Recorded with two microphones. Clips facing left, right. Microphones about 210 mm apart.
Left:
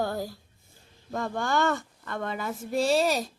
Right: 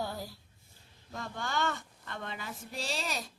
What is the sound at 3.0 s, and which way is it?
Speech, 40° left (ahead or behind).